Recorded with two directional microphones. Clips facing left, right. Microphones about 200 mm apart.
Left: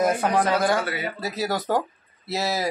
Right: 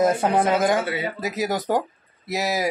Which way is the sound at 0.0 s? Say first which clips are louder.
Right 2 dB; 25° right (ahead or behind).